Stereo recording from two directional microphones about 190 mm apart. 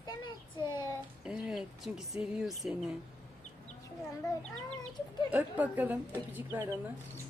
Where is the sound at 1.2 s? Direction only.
5° right (ahead or behind).